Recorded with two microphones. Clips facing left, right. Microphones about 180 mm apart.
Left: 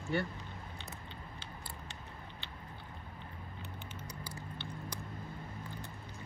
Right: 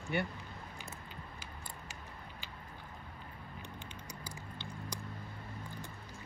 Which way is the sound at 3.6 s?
15° right (ahead or behind).